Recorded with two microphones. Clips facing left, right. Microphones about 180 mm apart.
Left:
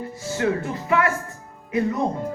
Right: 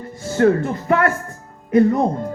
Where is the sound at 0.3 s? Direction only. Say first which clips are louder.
Right 8 dB; 45° right (ahead or behind).